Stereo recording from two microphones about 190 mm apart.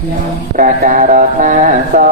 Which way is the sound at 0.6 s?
45° right (ahead or behind).